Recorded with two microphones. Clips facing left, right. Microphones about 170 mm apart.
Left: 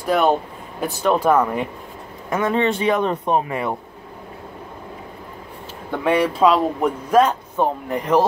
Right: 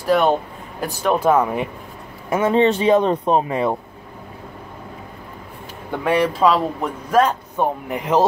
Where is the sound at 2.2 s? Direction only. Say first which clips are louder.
Right 3 dB; 20° right (ahead or behind).